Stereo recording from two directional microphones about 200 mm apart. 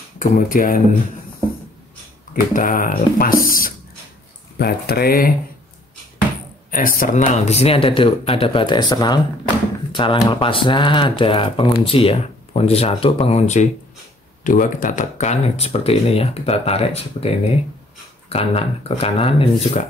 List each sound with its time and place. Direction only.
0.2 s speech: 45° left (ahead or behind)
2.5 s speech: 45° left (ahead or behind)
6.7 s speech: 45° left (ahead or behind)
18.3 s speech: 30° left (ahead or behind)